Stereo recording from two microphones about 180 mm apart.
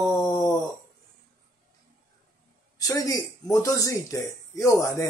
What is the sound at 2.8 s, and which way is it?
Speech, 20° left (ahead or behind).